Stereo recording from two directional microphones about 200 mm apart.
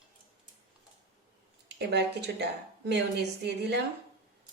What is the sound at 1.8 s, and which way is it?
A woman's voice, 55° right (ahead or behind).